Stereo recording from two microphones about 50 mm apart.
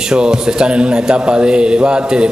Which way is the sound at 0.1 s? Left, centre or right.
Centre.